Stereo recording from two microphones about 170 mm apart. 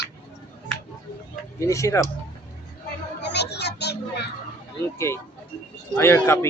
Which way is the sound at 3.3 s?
80° left.